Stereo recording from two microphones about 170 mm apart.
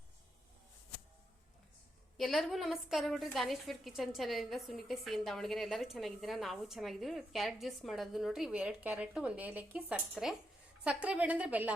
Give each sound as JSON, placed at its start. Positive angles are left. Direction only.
{"t": 2.1, "sound": "a woman's voice", "side_deg": 0}